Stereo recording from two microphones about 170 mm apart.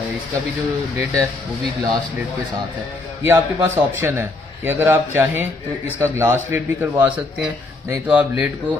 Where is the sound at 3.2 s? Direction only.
15° right (ahead or behind).